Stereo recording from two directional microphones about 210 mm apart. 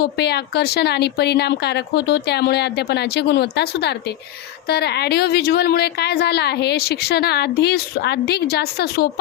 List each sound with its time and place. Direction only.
0.0 s a woman's voice: 50° left (ahead or behind)